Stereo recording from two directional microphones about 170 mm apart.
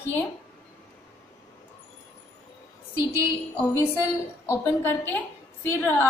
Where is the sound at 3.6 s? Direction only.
15° left (ahead or behind).